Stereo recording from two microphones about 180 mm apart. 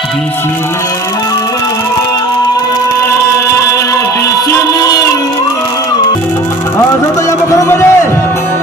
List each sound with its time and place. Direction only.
4.5 s music: 20° left (ahead or behind)
7.3 s speech: 15° left (ahead or behind)